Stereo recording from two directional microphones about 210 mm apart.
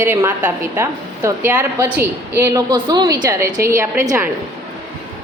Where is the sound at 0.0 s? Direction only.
10° right (ahead or behind).